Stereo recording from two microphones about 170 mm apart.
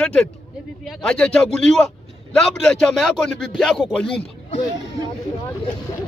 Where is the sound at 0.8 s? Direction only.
Centre (ahead or behind).